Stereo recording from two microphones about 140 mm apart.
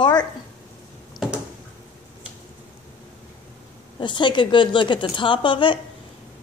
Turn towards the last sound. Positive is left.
turn(degrees=35)  # may be behind; listen again after turning